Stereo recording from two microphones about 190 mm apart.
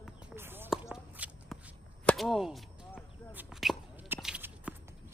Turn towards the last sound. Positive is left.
turn(degrees=-10)  # may be behind; listen again after turning